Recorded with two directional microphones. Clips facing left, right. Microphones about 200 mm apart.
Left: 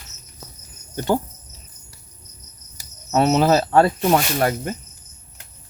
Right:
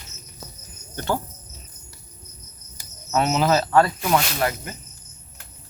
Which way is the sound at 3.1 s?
35° left (ahead or behind).